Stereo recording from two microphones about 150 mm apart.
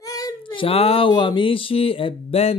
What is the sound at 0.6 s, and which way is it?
Speech, 40° left (ahead or behind).